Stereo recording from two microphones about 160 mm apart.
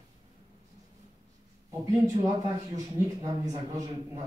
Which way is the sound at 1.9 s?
20° right (ahead or behind).